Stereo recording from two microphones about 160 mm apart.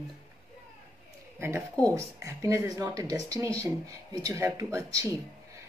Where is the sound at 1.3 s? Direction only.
15° right (ahead or behind).